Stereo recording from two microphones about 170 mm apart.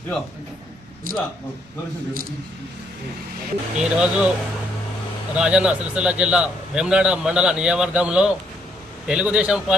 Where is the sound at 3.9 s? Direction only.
5° right (ahead or behind).